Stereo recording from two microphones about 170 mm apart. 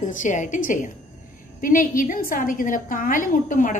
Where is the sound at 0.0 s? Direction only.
45° left (ahead or behind).